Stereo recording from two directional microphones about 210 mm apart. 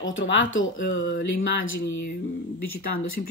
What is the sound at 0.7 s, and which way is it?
Speech, 50° left (ahead or behind).